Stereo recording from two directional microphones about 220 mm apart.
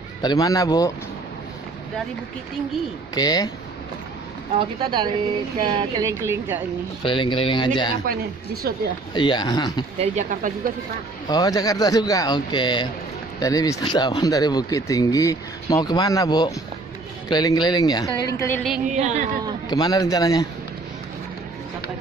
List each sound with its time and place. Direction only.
0.2 s speech: 15° left (ahead or behind)
3.2 s speech: 20° left (ahead or behind)
4.6 s speech: 20° right (ahead or behind)
7.0 s speech: 20° left (ahead or behind)
8.6 s speech: 45° right (ahead or behind)
9.1 s speech: 20° left (ahead or behind)
9.9 s speech: 35° right (ahead or behind)
11.2 s speech: 15° left (ahead or behind)
18.9 s speech: 35° right (ahead or behind)
19.7 s speech: 20° left (ahead or behind)